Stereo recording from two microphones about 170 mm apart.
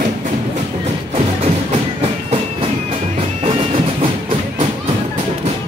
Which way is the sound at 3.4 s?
35° right (ahead or behind).